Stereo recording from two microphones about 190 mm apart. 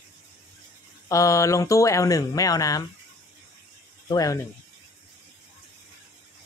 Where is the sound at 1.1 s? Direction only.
15° left (ahead or behind).